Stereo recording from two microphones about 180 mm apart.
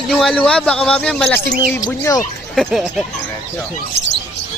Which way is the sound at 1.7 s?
20° left (ahead or behind).